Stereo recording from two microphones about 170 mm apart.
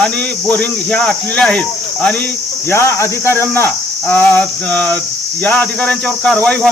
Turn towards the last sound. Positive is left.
turn(degrees=5)  # may be behind; listen again after turning